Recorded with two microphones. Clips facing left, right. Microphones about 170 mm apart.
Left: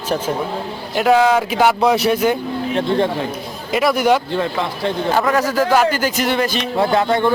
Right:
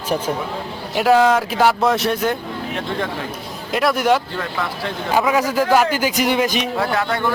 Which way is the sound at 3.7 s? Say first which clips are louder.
Left 2 dB; centre (ahead or behind).